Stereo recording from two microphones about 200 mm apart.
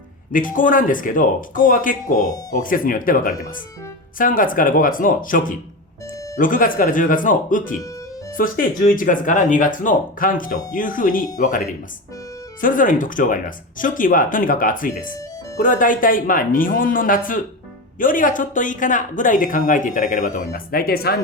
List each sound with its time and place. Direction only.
0.3 s speech: 45° left (ahead or behind)
12.6 s speech: 40° left (ahead or behind)